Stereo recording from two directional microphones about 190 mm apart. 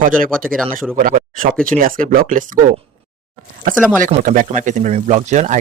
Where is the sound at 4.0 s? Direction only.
45° right (ahead or behind).